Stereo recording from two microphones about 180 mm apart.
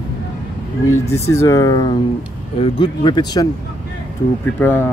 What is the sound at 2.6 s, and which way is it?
Speech, 30° left (ahead or behind).